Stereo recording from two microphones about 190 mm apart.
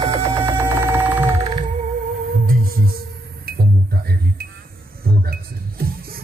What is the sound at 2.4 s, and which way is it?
Music, 50° right (ahead or behind).